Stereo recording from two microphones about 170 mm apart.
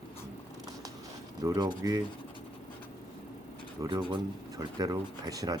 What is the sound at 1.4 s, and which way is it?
Speech, 25° right (ahead or behind).